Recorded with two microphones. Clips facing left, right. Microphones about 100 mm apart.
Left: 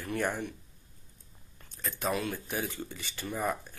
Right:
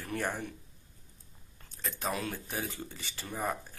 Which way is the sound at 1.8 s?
35° right (ahead or behind).